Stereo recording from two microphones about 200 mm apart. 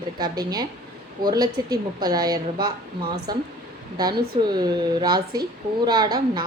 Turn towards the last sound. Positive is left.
turn(degrees=-20)  # may be behind; listen again after turning